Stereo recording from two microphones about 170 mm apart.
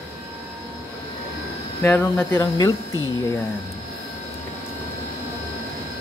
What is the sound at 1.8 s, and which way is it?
Speech, 10° left (ahead or behind).